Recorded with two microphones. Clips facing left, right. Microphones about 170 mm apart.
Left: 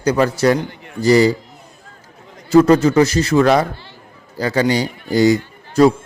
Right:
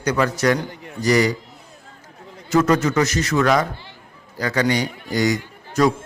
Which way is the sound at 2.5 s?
30° left (ahead or behind).